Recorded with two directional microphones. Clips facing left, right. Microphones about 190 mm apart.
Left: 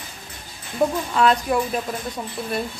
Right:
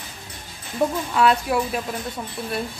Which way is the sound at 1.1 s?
5° right (ahead or behind).